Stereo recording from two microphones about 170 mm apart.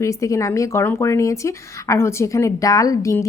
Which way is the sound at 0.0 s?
20° left (ahead or behind).